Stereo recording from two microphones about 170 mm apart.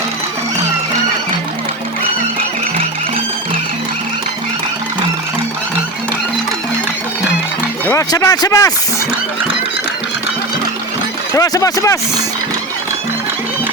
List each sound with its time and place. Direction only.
7.9 s speech: 20° left (ahead or behind)
11.3 s speech: 20° left (ahead or behind)